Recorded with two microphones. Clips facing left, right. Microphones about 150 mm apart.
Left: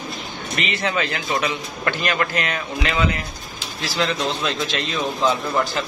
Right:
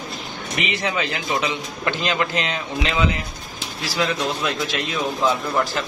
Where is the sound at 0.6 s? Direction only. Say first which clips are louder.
Left 1 dB; 15° right (ahead or behind).